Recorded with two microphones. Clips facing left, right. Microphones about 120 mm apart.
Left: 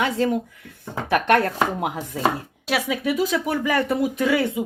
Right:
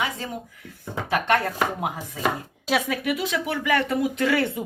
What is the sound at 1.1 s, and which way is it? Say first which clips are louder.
Speech: left 4 dB; 60° left (ahead or behind).